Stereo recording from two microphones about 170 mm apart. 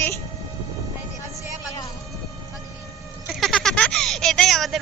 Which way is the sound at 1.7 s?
20° left (ahead or behind).